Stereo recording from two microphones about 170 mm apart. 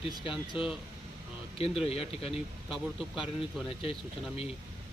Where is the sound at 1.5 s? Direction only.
35° left (ahead or behind).